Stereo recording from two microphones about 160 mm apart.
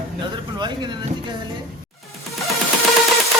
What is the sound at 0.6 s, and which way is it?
Speech, 30° right (ahead or behind).